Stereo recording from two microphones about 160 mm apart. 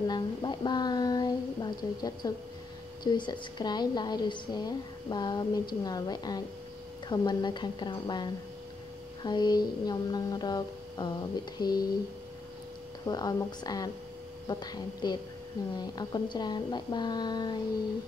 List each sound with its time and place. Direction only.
0.0 s a woman's voice: 25° left (ahead or behind)
13.0 s a woman's voice: 25° left (ahead or behind)